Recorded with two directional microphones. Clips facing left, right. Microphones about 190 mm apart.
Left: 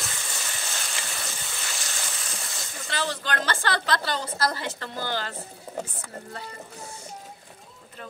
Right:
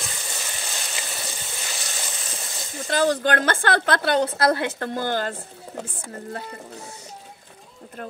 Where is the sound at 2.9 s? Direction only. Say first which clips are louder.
Right 9 dB; 45° right (ahead or behind).